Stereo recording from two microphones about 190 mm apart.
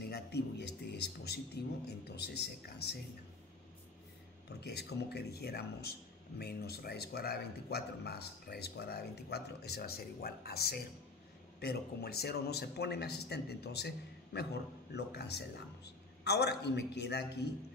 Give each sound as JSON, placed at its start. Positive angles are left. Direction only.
{"t": 0.0, "sound": "a man's voice", "side_deg": 60}
{"t": 4.5, "sound": "a man's voice", "side_deg": 60}